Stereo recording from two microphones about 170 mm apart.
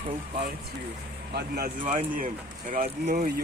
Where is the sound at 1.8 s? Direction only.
50° right (ahead or behind).